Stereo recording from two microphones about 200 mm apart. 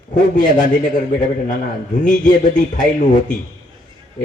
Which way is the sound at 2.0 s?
40° left (ahead or behind).